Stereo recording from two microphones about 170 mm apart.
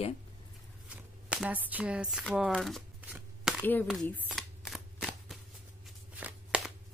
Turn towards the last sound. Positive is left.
turn(degrees=-10)  # may be behind; listen again after turning